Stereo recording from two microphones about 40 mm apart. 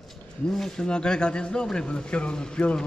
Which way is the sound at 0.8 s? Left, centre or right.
Left.